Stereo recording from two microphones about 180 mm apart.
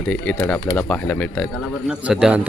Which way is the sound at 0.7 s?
5° left (ahead or behind).